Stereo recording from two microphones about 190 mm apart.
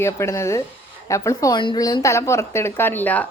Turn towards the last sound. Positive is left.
turn(degrees=10)  # may be behind; listen again after turning